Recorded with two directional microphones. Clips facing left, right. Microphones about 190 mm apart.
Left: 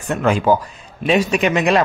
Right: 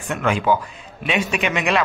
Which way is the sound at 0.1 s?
40° left (ahead or behind).